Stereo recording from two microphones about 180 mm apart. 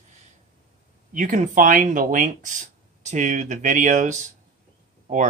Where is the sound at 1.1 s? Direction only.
45° right (ahead or behind).